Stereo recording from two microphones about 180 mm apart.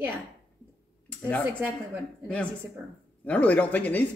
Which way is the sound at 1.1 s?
10° left (ahead or behind).